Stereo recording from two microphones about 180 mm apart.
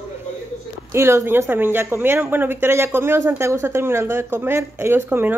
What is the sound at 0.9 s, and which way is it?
Speech, 15° right (ahead or behind).